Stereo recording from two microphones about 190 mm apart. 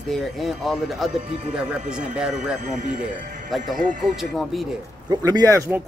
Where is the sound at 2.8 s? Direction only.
45° right (ahead or behind).